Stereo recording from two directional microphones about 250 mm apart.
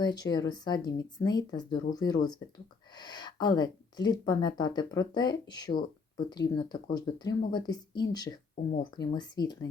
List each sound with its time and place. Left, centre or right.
0.0 s speech: centre